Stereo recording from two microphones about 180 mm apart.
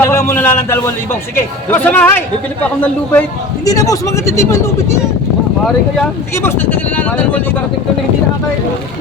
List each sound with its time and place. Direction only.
0.0 s speech: 15° left (ahead or behind)
6.3 s speech: 10° left (ahead or behind)